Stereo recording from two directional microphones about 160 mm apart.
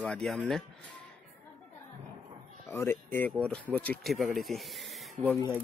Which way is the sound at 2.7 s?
15° left (ahead or behind).